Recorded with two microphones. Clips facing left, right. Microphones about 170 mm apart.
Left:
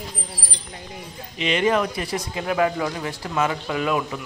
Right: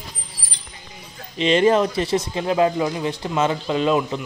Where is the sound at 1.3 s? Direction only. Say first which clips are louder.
Right 5 dB; 30° right (ahead or behind).